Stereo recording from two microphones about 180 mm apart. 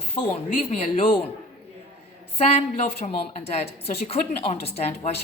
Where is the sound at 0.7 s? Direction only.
40° left (ahead or behind).